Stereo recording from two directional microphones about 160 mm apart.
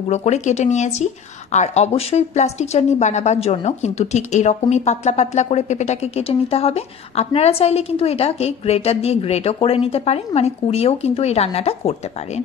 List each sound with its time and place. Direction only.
0.1 s a woman's voice: 45° left (ahead or behind)